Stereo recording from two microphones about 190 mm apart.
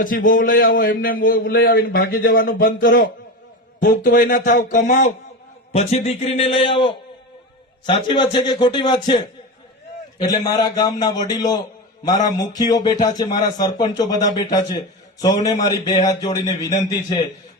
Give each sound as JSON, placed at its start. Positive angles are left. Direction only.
{"t": 0.0, "sound": "a man's voice", "side_deg": 45}
{"t": 5.7, "sound": "a man's voice", "side_deg": 35}
{"t": 15.5, "sound": "speech", "side_deg": 40}
{"t": 16.0, "sound": "a man's voice", "side_deg": 20}